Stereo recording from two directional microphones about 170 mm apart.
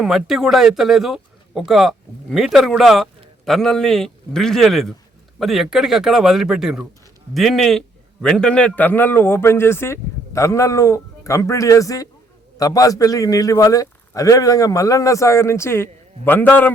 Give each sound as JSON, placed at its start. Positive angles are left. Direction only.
{"t": 0.0, "sound": "a man's voice", "side_deg": 0}